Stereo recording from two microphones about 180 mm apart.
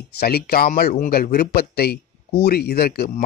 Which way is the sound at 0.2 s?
60° left (ahead or behind).